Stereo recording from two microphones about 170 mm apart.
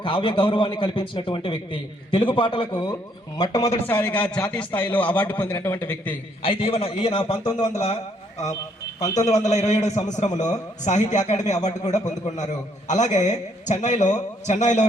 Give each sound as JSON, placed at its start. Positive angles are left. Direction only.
{"t": 0.0, "sound": "a man's voice", "side_deg": 30}
{"t": 3.8, "sound": "a man's voice", "side_deg": 10}
{"t": 6.4, "sound": "a man's voice", "side_deg": 35}
{"t": 9.2, "sound": "a man's voice", "side_deg": 40}